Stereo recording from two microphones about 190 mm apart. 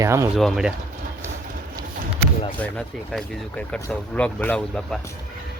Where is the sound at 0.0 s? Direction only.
15° right (ahead or behind).